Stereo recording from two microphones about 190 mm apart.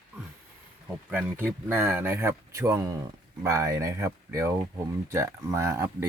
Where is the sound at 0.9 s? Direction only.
5° right (ahead or behind).